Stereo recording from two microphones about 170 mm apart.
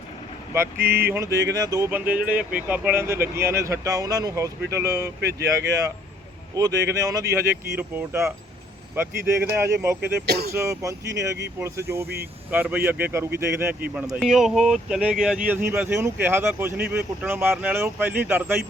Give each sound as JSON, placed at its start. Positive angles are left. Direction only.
{"t": 0.5, "sound": "speech", "side_deg": -15}
{"t": 5.2, "sound": "speech", "side_deg": -75}
{"t": 6.6, "sound": "speech", "side_deg": -20}
{"t": 10.2, "sound": "speech", "side_deg": -70}
{"t": 10.5, "sound": "speech", "side_deg": -15}
{"t": 13.9, "sound": "speech", "side_deg": 0}